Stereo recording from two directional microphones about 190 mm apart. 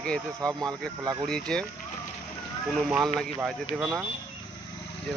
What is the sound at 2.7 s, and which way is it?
Speech, 5° left (ahead or behind).